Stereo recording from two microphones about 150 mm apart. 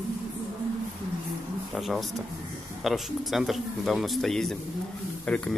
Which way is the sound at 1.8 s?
Centre (ahead or behind).